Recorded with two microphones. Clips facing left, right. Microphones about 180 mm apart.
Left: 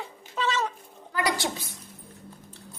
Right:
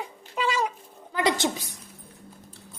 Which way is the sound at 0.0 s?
10° right (ahead or behind).